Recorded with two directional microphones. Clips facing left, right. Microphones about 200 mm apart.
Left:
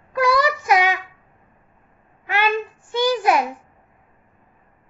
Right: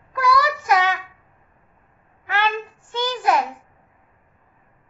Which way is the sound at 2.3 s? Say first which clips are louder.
Left 2 dB; 15° left (ahead or behind).